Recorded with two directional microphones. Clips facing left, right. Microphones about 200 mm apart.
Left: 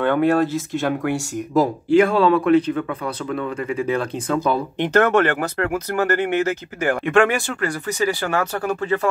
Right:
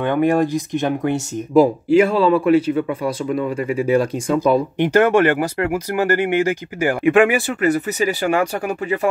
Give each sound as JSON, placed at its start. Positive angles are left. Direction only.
{"t": 0.0, "sound": "speech", "side_deg": -15}
{"t": 1.9, "sound": "speech", "side_deg": -5}